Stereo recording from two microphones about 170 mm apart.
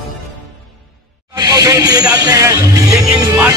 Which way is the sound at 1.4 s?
20° right (ahead or behind).